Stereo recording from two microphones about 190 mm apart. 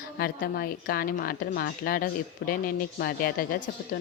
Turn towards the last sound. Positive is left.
turn(degrees=50)  # may be behind; listen again after turning